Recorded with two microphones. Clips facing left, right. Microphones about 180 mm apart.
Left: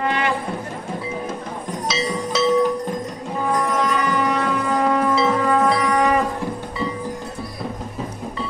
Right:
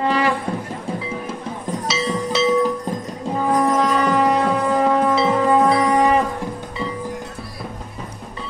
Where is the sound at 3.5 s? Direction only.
30° right (ahead or behind).